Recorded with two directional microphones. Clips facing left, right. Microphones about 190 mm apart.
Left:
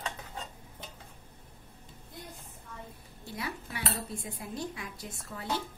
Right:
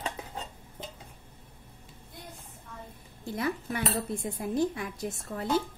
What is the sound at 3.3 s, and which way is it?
Speech, 50° right (ahead or behind).